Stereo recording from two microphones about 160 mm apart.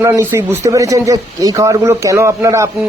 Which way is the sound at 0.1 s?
15° right (ahead or behind).